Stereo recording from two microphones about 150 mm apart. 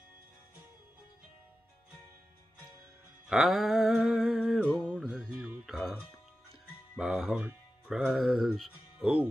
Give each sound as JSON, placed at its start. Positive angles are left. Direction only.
{"t": 3.3, "sound": "a sound", "side_deg": 0}
{"t": 4.6, "sound": "music", "side_deg": 10}
{"t": 4.8, "sound": "music", "side_deg": -5}
{"t": 7.0, "sound": "speech", "side_deg": 0}